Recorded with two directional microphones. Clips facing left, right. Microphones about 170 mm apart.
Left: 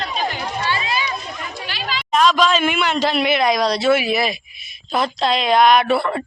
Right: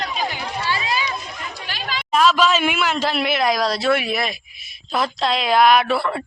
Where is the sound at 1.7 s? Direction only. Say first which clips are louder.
Left 2 dB; 50° right (ahead or behind).